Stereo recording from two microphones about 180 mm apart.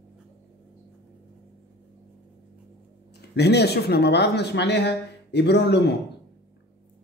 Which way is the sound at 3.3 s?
70° left (ahead or behind).